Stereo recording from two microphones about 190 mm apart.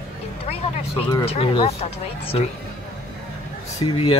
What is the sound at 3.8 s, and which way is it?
Speech, 30° left (ahead or behind).